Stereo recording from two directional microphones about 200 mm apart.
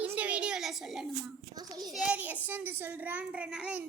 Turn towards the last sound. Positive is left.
turn(degrees=-5)  # may be behind; listen again after turning